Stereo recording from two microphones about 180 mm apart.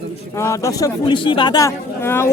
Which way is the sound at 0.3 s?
15° left (ahead or behind).